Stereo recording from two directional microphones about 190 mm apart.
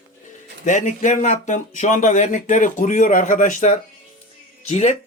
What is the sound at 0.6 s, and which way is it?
Speech, 40° left (ahead or behind).